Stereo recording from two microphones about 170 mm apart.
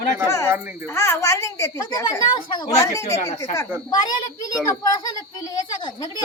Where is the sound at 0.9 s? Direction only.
15° left (ahead or behind).